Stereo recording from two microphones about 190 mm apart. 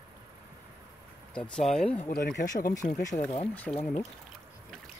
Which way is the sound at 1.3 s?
5° left (ahead or behind).